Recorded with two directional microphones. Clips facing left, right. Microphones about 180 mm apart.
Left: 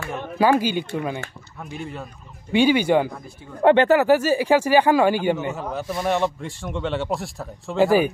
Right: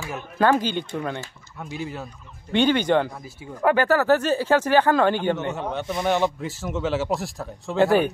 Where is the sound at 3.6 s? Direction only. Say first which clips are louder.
Left 4 dB; 25° left (ahead or behind).